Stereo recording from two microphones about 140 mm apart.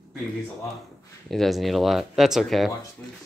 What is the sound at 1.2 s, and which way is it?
Speech, centre (ahead or behind).